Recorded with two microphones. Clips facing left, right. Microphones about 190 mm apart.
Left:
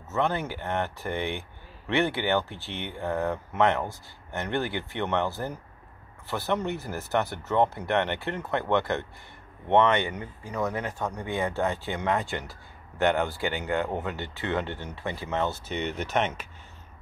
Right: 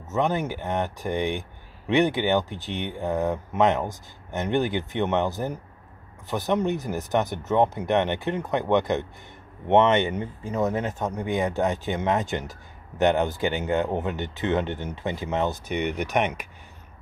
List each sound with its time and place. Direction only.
0.1 s speech: 15° right (ahead or behind)